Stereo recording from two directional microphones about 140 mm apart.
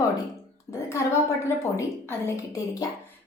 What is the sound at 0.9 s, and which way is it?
A woman's voice, 20° left (ahead or behind).